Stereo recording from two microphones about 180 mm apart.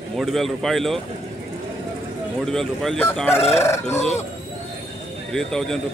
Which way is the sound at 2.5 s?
Centre (ahead or behind).